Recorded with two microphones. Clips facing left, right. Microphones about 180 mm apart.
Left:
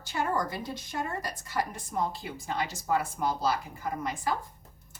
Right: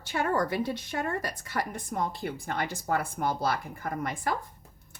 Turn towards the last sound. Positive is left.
turn(degrees=-60)  # may be behind; listen again after turning